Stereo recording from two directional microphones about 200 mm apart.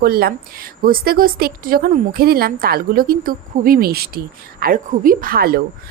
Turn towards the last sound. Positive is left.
turn(degrees=-50)  # may be behind; listen again after turning